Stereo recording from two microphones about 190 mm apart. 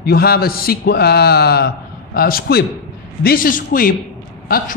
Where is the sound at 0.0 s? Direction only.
55° left (ahead or behind).